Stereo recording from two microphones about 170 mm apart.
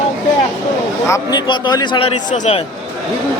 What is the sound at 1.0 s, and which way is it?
A man's voice, 20° left (ahead or behind).